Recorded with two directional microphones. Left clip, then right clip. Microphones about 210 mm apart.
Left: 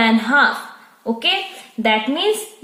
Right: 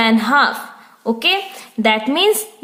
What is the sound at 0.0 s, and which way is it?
A woman's voice, 25° right (ahead or behind).